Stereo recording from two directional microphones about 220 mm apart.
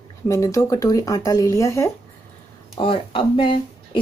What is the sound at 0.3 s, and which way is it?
Speech, 15° left (ahead or behind).